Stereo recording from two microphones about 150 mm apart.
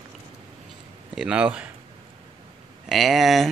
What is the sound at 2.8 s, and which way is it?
Speech, centre (ahead or behind).